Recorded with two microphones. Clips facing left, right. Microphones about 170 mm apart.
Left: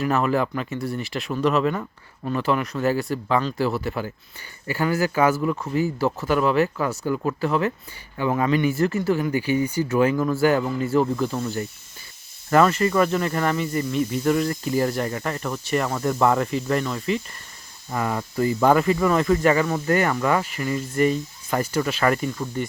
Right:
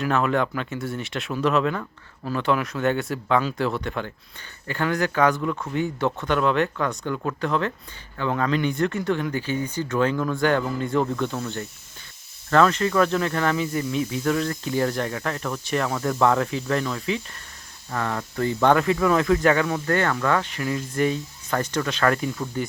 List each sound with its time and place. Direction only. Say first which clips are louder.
0.0 s speech: left 1 dB; centre (ahead or behind)